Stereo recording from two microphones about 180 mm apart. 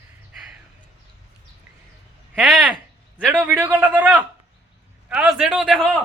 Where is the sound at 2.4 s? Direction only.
Centre (ahead or behind).